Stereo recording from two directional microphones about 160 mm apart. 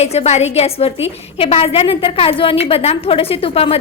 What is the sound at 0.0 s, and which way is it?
A woman's voice, 40° left (ahead or behind).